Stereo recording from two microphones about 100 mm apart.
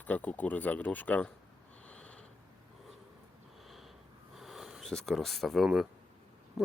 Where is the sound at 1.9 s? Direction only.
10° left (ahead or behind).